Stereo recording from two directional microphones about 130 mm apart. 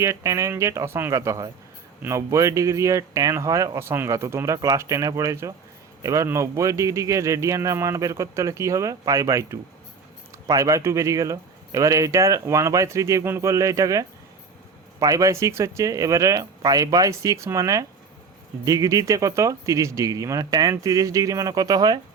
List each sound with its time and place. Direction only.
0.0 s speech: 25° right (ahead or behind)